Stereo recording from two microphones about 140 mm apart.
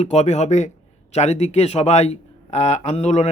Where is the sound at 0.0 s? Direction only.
50° left (ahead or behind).